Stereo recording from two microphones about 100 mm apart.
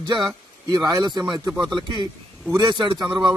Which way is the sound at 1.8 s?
50° right (ahead or behind).